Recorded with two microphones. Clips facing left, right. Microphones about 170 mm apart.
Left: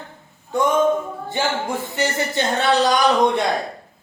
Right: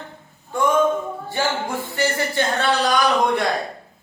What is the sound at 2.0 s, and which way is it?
Speech, 20° left (ahead or behind).